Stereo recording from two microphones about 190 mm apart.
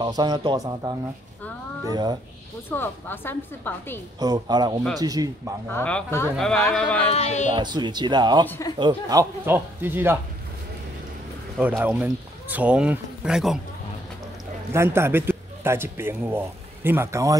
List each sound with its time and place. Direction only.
0.0 s speech: 20° right (ahead or behind)
2.7 s a woman's voice: 10° left (ahead or behind)
4.2 s speech: 20° right (ahead or behind)
5.7 s a woman's voice: 10° left (ahead or behind)
7.0 s speech: 35° left (ahead or behind)
7.5 s speech: 25° right (ahead or behind)
8.5 s a woman's voice: 15° left (ahead or behind)
8.7 s speech: 20° right (ahead or behind)
11.5 s speech: 5° right (ahead or behind)
14.7 s a man's voice: 15° right (ahead or behind)